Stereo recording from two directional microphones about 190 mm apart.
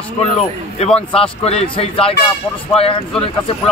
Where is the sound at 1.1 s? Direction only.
30° left (ahead or behind).